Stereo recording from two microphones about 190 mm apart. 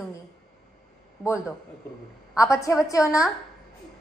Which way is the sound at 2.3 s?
15° left (ahead or behind).